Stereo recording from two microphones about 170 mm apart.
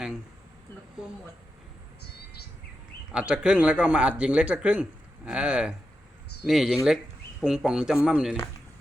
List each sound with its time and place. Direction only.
3.1 s speech: 5° right (ahead or behind)